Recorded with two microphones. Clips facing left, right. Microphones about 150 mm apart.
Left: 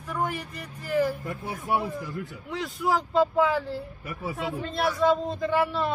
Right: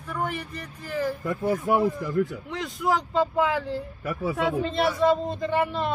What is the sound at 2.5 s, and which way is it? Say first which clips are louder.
Speech: right 1 dB; 5° left (ahead or behind).